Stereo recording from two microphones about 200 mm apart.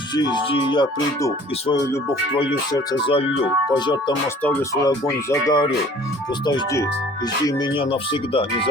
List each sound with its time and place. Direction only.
0.2 s speech: 20° left (ahead or behind)